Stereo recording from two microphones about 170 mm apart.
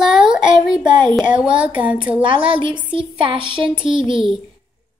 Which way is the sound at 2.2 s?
30° right (ahead or behind).